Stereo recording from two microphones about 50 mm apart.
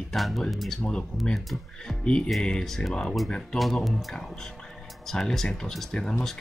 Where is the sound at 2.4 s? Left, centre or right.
Centre.